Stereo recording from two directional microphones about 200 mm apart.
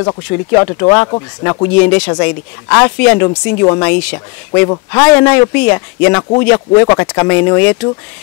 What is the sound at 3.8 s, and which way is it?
Speech, 5° left (ahead or behind).